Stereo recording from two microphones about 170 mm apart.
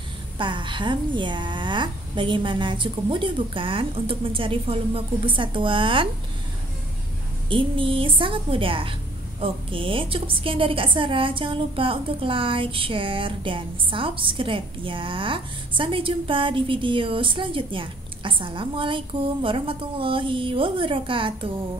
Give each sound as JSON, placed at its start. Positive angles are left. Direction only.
{"t": 0.4, "sound": "a woman's voice", "side_deg": -30}
{"t": 7.4, "sound": "a woman's voice", "side_deg": -30}